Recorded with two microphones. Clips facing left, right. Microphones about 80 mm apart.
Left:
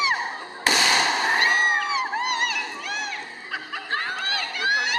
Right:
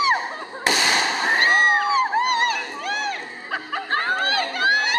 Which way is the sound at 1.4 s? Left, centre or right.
Right.